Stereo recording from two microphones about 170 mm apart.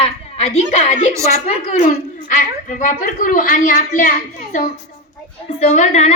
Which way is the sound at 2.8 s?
50° left (ahead or behind).